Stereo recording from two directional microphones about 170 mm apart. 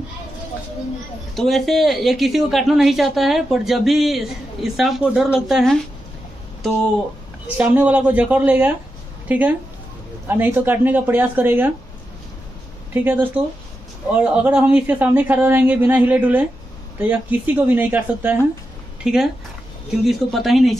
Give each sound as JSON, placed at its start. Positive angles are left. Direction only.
{"t": 1.3, "sound": "a woman's voice", "side_deg": 0}
{"t": 7.4, "sound": "a woman's voice", "side_deg": -10}
{"t": 12.9, "sound": "a woman's voice", "side_deg": -10}